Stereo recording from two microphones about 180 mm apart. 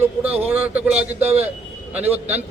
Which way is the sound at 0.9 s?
10° right (ahead or behind).